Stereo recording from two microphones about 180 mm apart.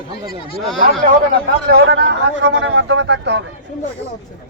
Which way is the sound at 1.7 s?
65° right (ahead or behind).